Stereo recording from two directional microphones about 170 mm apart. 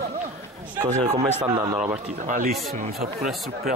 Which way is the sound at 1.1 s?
35° right (ahead or behind).